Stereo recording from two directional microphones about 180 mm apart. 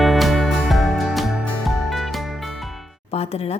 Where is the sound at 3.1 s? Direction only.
35° left (ahead or behind).